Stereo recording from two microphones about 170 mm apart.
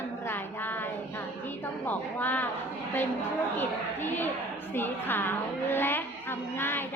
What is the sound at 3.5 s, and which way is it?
A woman's voice, 10° left (ahead or behind).